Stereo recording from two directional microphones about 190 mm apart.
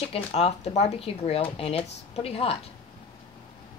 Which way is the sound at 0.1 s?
30° left (ahead or behind).